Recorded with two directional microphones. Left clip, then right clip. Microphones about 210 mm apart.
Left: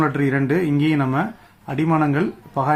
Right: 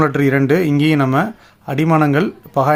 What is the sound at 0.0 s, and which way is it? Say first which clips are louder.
Speech: right 5 dB; 50° right (ahead or behind).